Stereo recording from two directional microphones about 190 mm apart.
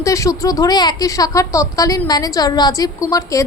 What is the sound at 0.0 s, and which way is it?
Speech, 15° left (ahead or behind).